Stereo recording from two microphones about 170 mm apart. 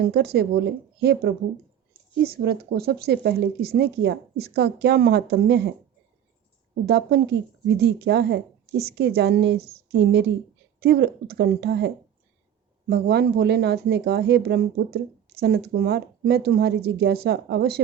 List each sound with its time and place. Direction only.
0.0 s speech: 65° right (ahead or behind); by 5.7 s 85° right
6.8 s speech: 80° right
10.8 s speech: 75° right (ahead or behind)
12.9 s speech: 75° right (ahead or behind)